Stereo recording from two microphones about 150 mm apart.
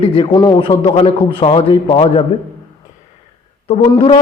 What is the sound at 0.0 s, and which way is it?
A man's voice, 35° left (ahead or behind).